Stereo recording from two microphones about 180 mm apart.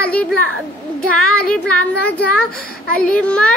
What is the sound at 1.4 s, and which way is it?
Child singing, 5° left (ahead or behind).